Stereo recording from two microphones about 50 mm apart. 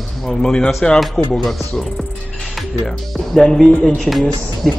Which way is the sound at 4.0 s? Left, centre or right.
Centre.